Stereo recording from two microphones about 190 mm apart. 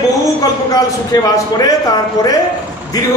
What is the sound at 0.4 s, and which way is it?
A man's voice, 20° left (ahead or behind).